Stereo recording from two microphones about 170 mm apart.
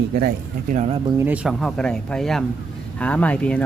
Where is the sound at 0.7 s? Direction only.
40° right (ahead or behind).